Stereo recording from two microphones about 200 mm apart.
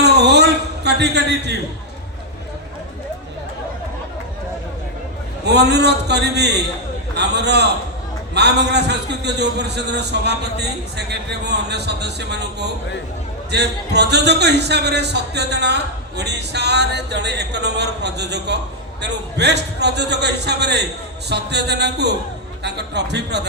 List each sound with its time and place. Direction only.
0.0 s a sound: 55° right (ahead or behind)
0.9 s a man's voice: 55° right (ahead or behind)
5.5 s a man's voice: 55° right (ahead or behind)